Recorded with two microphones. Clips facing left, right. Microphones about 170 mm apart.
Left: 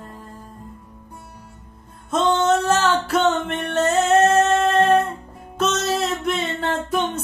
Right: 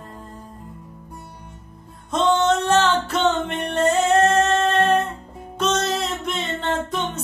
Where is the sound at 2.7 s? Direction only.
10° left (ahead or behind).